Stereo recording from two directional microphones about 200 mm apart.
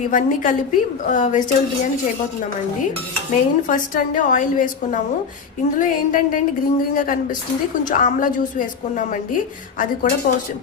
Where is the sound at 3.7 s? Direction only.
40° left (ahead or behind).